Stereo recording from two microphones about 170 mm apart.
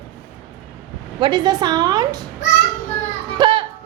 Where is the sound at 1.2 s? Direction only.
25° right (ahead or behind).